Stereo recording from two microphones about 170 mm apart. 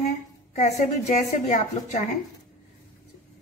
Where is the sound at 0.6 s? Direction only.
40° left (ahead or behind).